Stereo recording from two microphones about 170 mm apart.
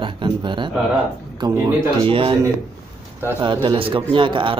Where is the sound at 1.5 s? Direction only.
10° right (ahead or behind).